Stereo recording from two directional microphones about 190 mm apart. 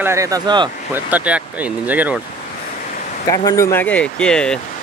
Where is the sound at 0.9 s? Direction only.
10° right (ahead or behind).